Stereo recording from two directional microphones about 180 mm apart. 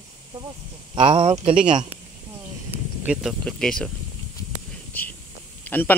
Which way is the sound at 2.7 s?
10° right (ahead or behind).